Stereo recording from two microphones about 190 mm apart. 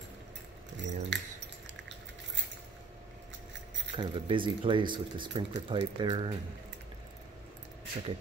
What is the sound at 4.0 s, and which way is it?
Speech, 25° right (ahead or behind).